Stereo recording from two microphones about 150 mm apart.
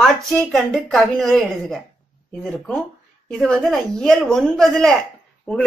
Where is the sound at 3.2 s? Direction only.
5° left (ahead or behind).